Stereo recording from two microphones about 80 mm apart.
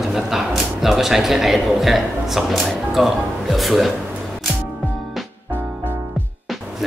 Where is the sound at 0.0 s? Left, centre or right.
Centre.